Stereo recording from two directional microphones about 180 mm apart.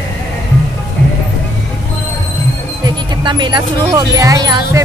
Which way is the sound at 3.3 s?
25° right (ahead or behind).